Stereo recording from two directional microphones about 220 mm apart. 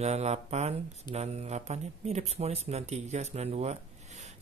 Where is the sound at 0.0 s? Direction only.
30° right (ahead or behind).